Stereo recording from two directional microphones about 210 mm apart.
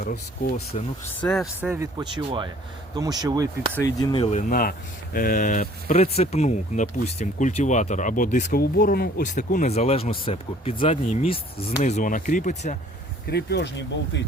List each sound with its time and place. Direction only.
0.0 s speech: 45° left (ahead or behind)
1.2 s speech: centre (ahead or behind)
1.7 s speech: 15° right (ahead or behind)
4.1 s speech: 30° left (ahead or behind)
13.2 s speech: 50° left (ahead or behind)